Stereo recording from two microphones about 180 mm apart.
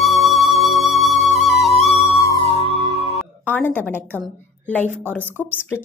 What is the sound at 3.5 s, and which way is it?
Speech, 10° left (ahead or behind).